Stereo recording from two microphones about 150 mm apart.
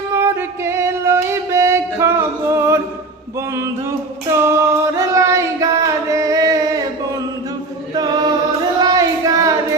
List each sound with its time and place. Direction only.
0.1 s music: 15° right (ahead or behind)
3.5 s singing: 20° right (ahead or behind)
6.1 s music: 20° right (ahead or behind)
7.9 s chant: 25° right (ahead or behind)
8.8 s a sound: 25° right (ahead or behind)